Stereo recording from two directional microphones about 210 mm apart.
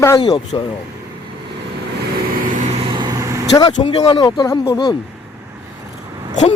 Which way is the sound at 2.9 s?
20° right (ahead or behind).